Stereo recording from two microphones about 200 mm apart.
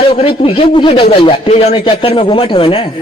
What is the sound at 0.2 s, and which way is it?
A man's voice, 30° left (ahead or behind).